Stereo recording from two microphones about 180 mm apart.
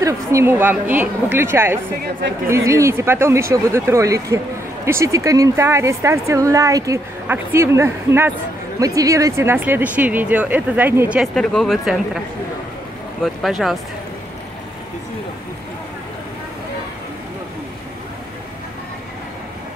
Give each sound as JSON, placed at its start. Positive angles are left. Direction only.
{"t": 0.0, "sound": "speech", "side_deg": -15}
{"t": 11.3, "sound": "speech", "side_deg": 5}
{"t": 13.2, "sound": "speech", "side_deg": 0}